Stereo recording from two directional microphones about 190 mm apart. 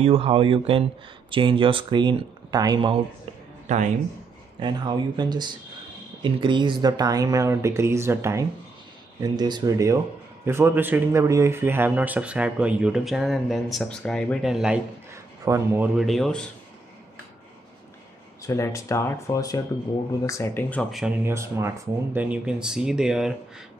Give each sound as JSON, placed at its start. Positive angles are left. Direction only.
{"t": 0.0, "sound": "speech", "side_deg": -30}
{"t": 3.6, "sound": "a man's voice", "side_deg": -40}
{"t": 4.6, "sound": "speech", "side_deg": -25}
{"t": 15.4, "sound": "speech", "side_deg": -15}
{"t": 16.0, "sound": "speech", "side_deg": 0}
{"t": 18.5, "sound": "speech", "side_deg": 15}
{"t": 20.9, "sound": "speech", "side_deg": -5}